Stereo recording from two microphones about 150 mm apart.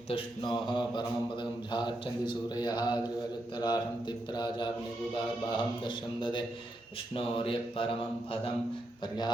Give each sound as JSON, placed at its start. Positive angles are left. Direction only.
{"t": 0.1, "sound": "mantra", "side_deg": 35}